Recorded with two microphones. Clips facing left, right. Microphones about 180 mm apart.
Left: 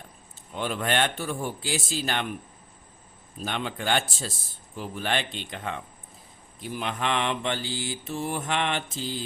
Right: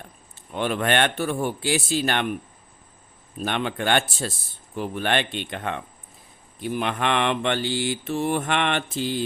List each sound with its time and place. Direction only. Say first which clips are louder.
0.5 s mantra: right 4 dB; 65° right (ahead or behind)
3.4 s mantra: right 5 dB; 65° right (ahead or behind)